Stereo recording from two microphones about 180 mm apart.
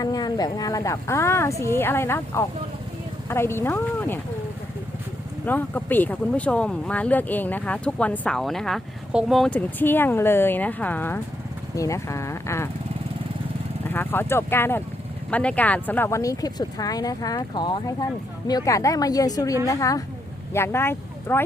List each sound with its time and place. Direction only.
0.0 s speech: 20° left (ahead or behind)
5.5 s speech: 10° left (ahead or behind)
13.8 s speech: 10° left (ahead or behind)